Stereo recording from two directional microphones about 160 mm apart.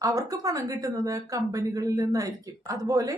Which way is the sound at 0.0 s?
20° right (ahead or behind).